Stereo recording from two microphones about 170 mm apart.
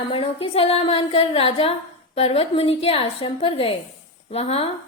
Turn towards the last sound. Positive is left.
turn(degrees=35)  # may be behind; listen again after turning